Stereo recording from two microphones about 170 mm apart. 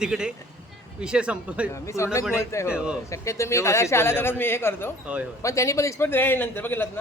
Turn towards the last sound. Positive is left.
turn(degrees=10)  # may be behind; listen again after turning